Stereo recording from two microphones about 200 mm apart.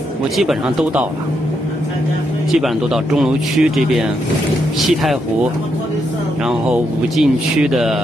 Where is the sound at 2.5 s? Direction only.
Centre (ahead or behind).